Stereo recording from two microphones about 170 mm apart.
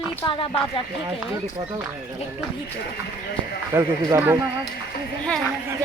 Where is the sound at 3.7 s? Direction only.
15° right (ahead or behind).